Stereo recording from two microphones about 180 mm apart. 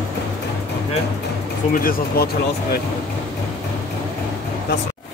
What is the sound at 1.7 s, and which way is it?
Speech, 55° left (ahead or behind).